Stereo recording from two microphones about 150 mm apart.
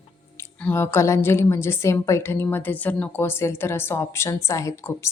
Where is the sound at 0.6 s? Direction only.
15° left (ahead or behind).